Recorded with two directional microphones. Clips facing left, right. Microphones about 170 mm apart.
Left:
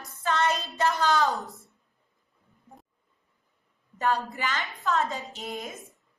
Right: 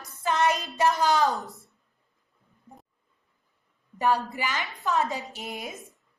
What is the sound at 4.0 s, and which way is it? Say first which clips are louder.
Speech: right 2 dB; 15° right (ahead or behind).